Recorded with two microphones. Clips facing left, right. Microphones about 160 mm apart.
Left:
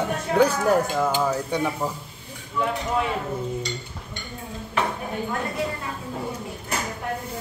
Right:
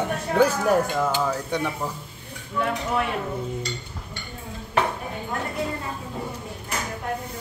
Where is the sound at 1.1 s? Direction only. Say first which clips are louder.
Left 1 dB; 10° left (ahead or behind).